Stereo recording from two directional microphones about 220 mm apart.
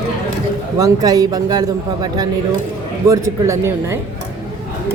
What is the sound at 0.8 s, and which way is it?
A man's voice, 15° right (ahead or behind).